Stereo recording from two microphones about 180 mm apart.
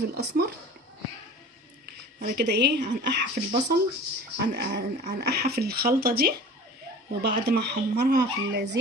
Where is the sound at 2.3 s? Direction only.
70° right (ahead or behind).